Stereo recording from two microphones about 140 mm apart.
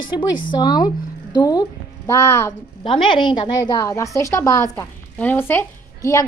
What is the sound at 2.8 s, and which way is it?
A woman's voice, 40° left (ahead or behind).